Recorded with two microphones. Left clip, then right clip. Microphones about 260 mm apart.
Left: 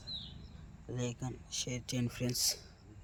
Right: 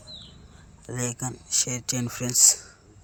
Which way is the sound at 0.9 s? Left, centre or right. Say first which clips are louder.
Right 9 dB; centre.